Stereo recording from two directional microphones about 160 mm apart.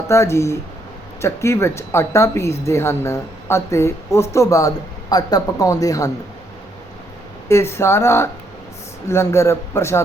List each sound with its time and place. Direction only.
0.1 s speech: 15° left (ahead or behind)
7.4 s speech: 15° left (ahead or behind)